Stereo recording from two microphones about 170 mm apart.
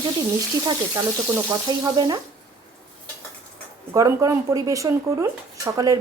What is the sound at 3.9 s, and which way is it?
Speech, 20° right (ahead or behind).